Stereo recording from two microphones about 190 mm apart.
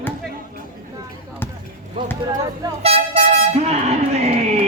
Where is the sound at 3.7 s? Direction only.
35° right (ahead or behind).